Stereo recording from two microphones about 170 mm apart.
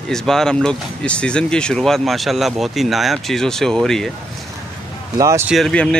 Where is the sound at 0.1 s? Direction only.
5° left (ahead or behind).